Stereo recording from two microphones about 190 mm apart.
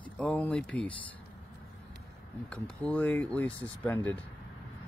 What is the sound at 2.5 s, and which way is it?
Speech, 10° left (ahead or behind).